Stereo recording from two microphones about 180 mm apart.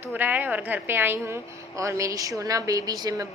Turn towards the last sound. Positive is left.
turn(degrees=-20)  # may be behind; listen again after turning